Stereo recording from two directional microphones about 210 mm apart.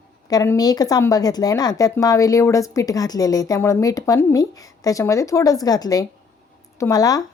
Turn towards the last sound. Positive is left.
turn(degrees=15)  # may be behind; listen again after turning